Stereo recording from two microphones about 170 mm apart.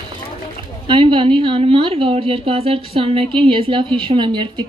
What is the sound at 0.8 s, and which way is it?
A woman's voice, 30° right (ahead or behind).